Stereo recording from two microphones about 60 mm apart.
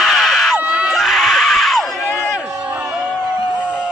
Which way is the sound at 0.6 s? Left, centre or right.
Centre.